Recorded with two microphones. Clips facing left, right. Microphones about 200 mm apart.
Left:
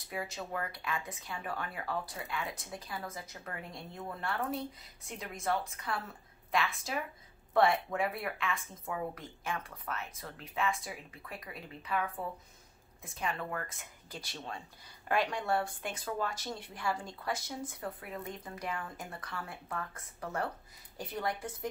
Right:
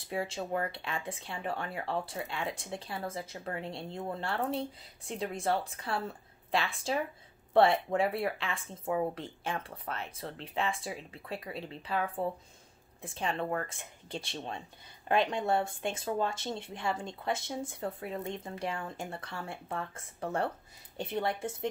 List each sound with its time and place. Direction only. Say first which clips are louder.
0.1 s a woman's voice: right 5 dB; 30° right (ahead or behind)